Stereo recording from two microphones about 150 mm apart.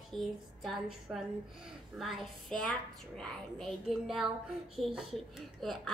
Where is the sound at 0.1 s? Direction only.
Centre (ahead or behind).